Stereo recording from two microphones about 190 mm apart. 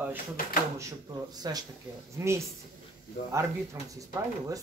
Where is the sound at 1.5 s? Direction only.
20° right (ahead or behind).